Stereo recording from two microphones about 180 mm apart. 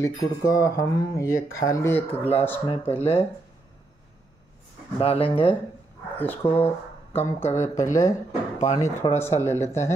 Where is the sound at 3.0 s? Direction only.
35° left (ahead or behind).